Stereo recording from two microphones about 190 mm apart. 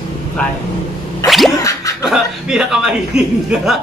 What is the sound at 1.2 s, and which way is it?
Music, centre (ahead or behind).